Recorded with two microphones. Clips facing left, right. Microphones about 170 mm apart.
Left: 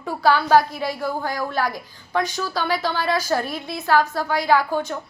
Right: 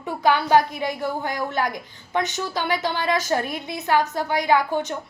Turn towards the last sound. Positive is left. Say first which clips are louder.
# left 1 dB
turn(degrees=-20)  # may be behind; listen again after turning